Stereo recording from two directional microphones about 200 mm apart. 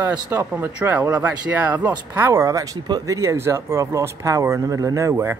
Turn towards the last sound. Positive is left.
turn(degrees=-10)  # may be behind; listen again after turning